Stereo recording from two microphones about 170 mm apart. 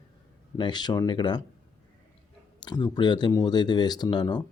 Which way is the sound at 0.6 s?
25° left (ahead or behind).